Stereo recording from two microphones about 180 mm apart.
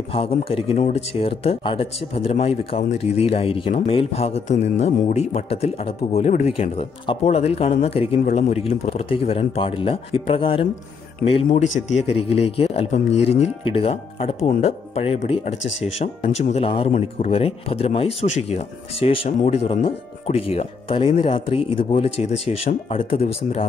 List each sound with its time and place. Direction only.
0.1 s speech: 35° left (ahead or behind)